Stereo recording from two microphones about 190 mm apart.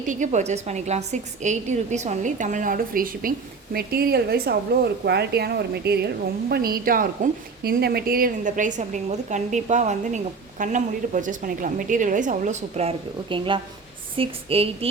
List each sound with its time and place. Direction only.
0.0 s a woman's voice: 40° right (ahead or behind)
13.3 s a woman's voice: 25° right (ahead or behind)